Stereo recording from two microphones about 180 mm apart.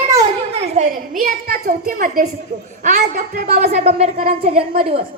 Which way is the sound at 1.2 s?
55° right (ahead or behind).